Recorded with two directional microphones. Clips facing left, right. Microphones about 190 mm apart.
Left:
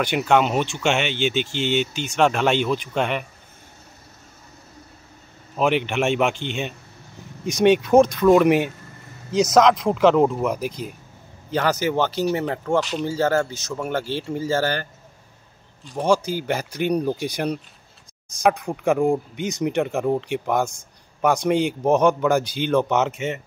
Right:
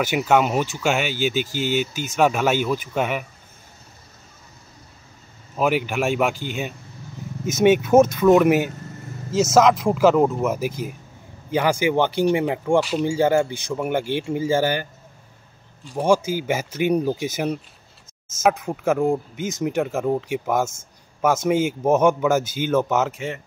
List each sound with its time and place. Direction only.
0.0 s speech: 5° right (ahead or behind)
5.6 s speech: 5° right (ahead or behind)
22.4 s speech: 45° right (ahead or behind)
22.7 s speech: 5° right (ahead or behind)